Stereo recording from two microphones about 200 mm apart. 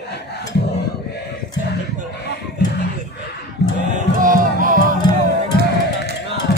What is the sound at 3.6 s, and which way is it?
Music, 55° left (ahead or behind).